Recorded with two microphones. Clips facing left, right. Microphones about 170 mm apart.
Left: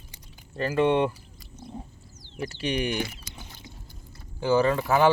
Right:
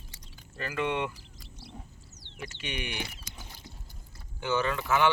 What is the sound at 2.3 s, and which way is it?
Speech, 35° left (ahead or behind).